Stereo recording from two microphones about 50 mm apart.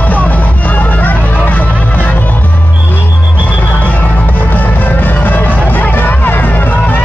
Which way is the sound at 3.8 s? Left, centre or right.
Left.